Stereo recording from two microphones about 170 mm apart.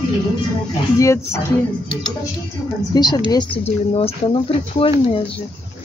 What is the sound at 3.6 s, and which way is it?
Speech, 35° left (ahead or behind).